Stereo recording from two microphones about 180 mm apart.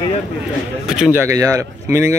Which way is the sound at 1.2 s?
20° right (ahead or behind).